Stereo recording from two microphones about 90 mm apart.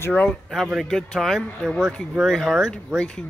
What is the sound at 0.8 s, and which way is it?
Speech, 5° left (ahead or behind).